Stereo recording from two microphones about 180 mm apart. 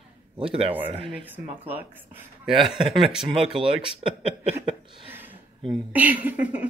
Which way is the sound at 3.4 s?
30° right (ahead or behind).